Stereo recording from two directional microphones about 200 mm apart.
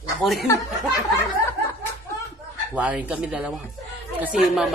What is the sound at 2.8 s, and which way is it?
Speech, 5° right (ahead or behind).